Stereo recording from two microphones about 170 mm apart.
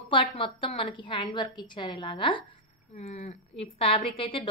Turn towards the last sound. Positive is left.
turn(degrees=30)  # may be behind; listen again after turning